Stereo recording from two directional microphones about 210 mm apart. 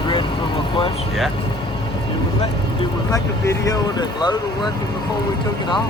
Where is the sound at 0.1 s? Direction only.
25° left (ahead or behind).